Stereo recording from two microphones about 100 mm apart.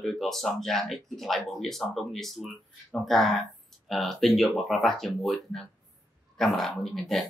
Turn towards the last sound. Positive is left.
turn(degrees=0)  # may be behind; listen again after turning